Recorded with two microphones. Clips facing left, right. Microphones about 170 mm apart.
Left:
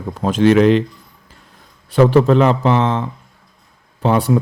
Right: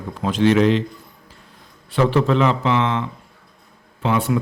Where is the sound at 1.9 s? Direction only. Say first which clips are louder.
Left 6 dB; 45° left (ahead or behind).